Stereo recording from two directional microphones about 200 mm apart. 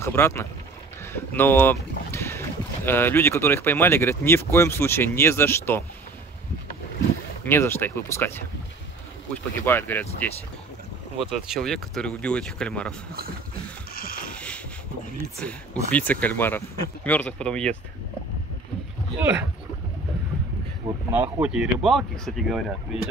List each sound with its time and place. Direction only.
0.0 s speech: 10° left (ahead or behind)
7.4 s speech: 10° left (ahead or behind)
11.4 s speech: centre (ahead or behind)
13.9 s a sound: 45° left (ahead or behind)
15.3 s speech: 5° left (ahead or behind)
21.1 s speech: 5° right (ahead or behind)